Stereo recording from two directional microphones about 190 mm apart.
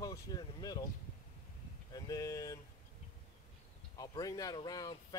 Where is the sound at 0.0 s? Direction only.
20° left (ahead or behind).